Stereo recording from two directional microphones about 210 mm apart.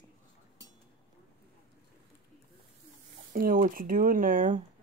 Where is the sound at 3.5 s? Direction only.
40° right (ahead or behind).